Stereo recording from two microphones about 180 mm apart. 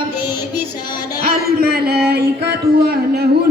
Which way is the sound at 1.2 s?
60° right (ahead or behind).